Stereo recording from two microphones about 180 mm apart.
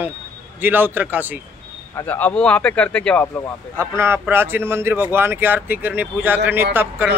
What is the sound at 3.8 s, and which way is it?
Speech, 15° right (ahead or behind).